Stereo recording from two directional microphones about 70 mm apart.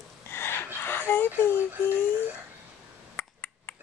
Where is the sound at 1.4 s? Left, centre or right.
Left.